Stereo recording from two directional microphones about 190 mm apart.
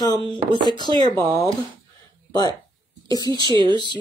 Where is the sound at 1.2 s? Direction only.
25° right (ahead or behind).